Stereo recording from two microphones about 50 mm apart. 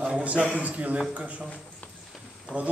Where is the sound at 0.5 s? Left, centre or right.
Right.